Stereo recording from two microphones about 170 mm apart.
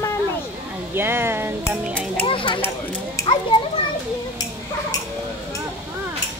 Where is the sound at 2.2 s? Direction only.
30° left (ahead or behind).